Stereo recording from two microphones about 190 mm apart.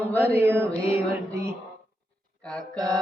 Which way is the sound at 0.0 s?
10° left (ahead or behind).